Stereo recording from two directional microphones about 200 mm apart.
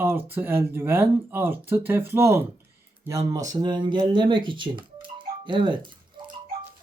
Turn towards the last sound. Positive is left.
turn(degrees=-25)  # may be behind; listen again after turning